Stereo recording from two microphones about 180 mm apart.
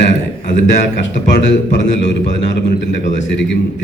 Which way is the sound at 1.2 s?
75° left (ahead or behind).